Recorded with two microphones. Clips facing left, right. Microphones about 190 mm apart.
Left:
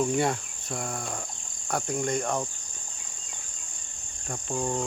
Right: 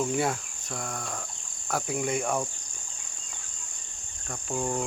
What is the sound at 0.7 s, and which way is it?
Cricket, 15° left (ahead or behind).